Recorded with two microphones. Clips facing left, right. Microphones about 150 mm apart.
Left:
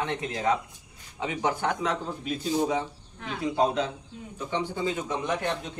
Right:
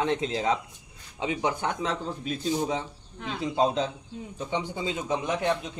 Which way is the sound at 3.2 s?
25° right (ahead or behind).